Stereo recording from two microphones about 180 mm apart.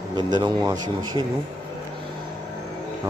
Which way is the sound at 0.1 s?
25° right (ahead or behind).